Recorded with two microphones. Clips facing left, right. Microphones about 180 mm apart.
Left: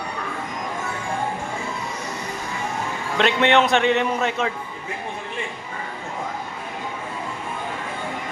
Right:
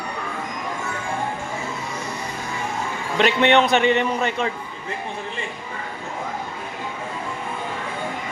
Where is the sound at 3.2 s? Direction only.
Centre (ahead or behind).